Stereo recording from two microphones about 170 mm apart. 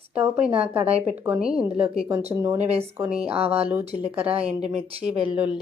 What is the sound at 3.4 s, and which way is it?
Speech, 35° right (ahead or behind).